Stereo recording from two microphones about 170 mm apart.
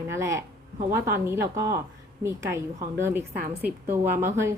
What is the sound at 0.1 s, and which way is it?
A woman's voice, 15° right (ahead or behind).